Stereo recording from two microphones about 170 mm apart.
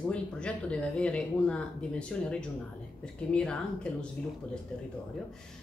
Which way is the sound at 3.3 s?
5° left (ahead or behind).